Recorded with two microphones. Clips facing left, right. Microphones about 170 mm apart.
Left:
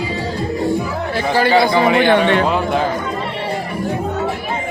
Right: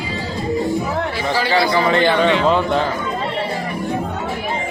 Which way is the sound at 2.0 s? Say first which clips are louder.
Left 2 dB; 55° left (ahead or behind).